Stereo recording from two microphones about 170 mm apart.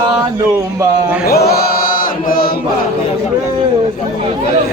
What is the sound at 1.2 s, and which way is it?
Chant, 65° left (ahead or behind).